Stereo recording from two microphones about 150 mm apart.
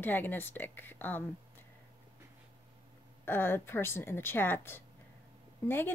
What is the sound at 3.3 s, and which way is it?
Speech, 15° left (ahead or behind).